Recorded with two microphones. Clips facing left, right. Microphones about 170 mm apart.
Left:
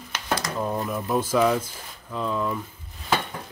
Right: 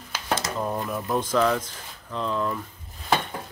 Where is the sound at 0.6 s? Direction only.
Centre (ahead or behind).